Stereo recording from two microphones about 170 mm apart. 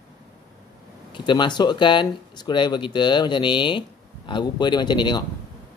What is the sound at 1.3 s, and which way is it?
Speech, 25° left (ahead or behind).